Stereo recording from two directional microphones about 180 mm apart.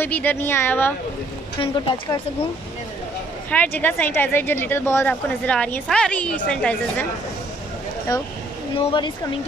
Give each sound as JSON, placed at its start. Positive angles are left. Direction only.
{"t": 0.0, "sound": "speech", "side_deg": 10}
{"t": 1.6, "sound": "speech", "side_deg": 30}
{"t": 3.4, "sound": "speech", "side_deg": 10}
{"t": 8.7, "sound": "speech", "side_deg": 25}